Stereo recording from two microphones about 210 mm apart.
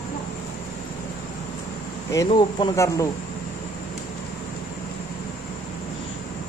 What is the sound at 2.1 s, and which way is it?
Speech, 20° left (ahead or behind).